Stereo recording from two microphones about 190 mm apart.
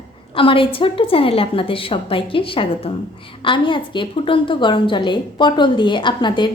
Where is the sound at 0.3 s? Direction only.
30° left (ahead or behind).